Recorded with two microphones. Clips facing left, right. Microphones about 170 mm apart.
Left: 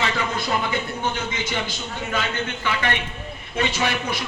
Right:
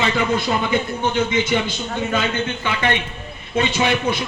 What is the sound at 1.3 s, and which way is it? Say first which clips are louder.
A man's voice: right 8 dB; 20° right (ahead or behind).